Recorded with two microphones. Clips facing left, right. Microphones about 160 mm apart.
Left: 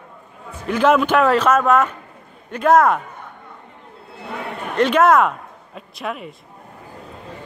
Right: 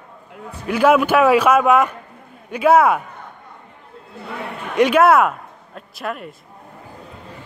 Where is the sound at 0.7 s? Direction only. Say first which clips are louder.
Right 1 dB; 10° right (ahead or behind).